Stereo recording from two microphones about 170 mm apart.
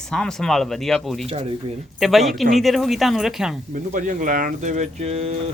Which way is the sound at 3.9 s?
50° right (ahead or behind).